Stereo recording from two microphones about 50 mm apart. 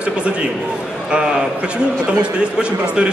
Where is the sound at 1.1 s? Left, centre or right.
Centre.